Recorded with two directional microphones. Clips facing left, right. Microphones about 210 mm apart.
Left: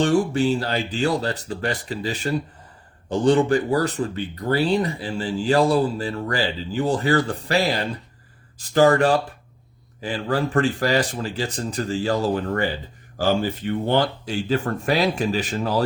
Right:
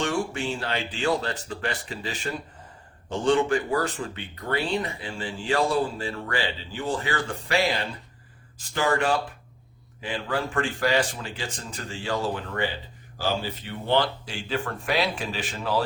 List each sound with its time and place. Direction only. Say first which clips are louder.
0.0 s speech: left 8 dB; 35° left (ahead or behind)